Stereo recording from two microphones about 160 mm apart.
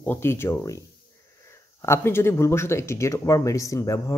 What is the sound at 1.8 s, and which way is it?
Speech, 15° left (ahead or behind).